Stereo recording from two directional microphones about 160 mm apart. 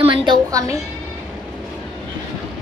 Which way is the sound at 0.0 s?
35° right (ahead or behind).